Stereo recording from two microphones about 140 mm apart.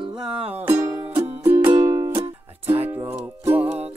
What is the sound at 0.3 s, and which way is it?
Music, 45° right (ahead or behind).